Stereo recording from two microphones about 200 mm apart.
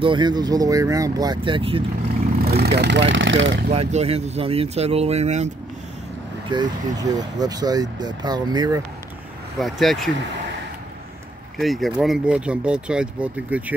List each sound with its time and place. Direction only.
0.0 s speech: 25° right (ahead or behind)
2.4 s speech: 50° right (ahead or behind); by 3.5 s 70° right (ahead or behind)
3.7 s speech: 30° right (ahead or behind)
6.5 s speech: 20° right (ahead or behind)
9.6 s speech: centre (ahead or behind)
11.5 s speech: centre (ahead or behind)